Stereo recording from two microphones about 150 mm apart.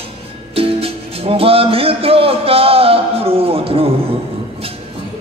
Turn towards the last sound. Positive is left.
turn(degrees=-40)  # may be behind; listen again after turning